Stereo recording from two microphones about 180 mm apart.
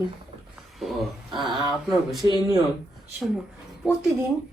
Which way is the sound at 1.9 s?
Centre (ahead or behind).